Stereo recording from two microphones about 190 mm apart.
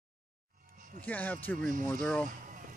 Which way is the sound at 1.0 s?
10° left (ahead or behind).